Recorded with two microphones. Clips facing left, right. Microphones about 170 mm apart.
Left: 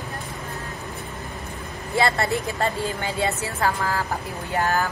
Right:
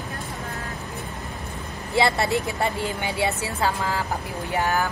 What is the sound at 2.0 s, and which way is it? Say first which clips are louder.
A woman's voice: right 1 dB; 20° right (ahead or behind).